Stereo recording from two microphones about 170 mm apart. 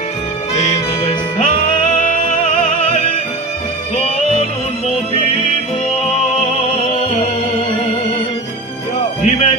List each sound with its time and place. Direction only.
0.7 s music: 35° left (ahead or behind)
1.5 s music: 50° left (ahead or behind)
5.9 s music: 35° left (ahead or behind)
9.2 s music: 40° left (ahead or behind)